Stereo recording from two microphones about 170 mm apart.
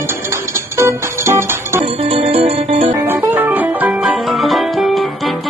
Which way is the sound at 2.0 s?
35° right (ahead or behind).